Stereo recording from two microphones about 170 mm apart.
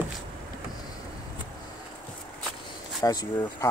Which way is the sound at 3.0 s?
25° left (ahead or behind).